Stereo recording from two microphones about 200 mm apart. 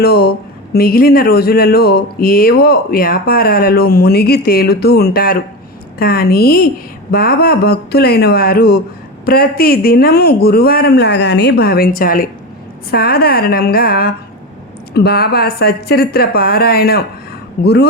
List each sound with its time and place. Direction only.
0.0 s speech: 50° left (ahead or behind)